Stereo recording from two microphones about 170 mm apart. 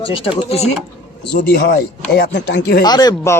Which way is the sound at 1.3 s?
90° left.